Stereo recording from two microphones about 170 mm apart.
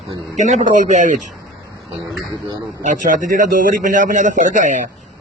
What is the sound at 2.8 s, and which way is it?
A man's voice, 50° right (ahead or behind).